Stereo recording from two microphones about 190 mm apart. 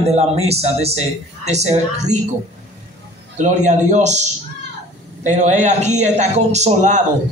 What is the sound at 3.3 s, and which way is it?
Speech, 40° right (ahead or behind).